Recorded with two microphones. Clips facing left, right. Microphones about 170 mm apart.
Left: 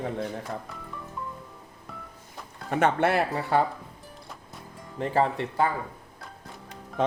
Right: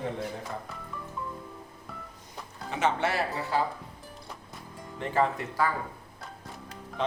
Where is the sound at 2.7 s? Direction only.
55° left (ahead or behind).